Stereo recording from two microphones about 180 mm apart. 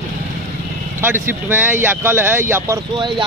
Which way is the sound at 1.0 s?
15° right (ahead or behind).